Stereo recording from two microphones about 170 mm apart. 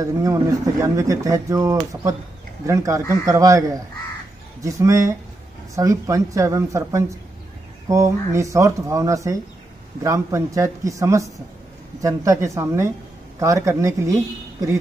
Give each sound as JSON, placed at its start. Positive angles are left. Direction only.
{"t": 0.0, "sound": "speech", "side_deg": -20}